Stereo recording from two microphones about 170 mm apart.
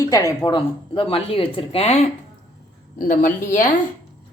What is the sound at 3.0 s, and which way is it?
Speech, 55° left (ahead or behind).